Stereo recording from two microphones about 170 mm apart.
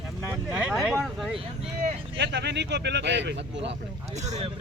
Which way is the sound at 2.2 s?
90° right.